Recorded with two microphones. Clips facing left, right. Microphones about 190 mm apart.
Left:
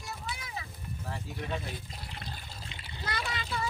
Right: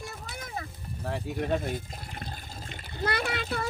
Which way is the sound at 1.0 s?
65° right (ahead or behind).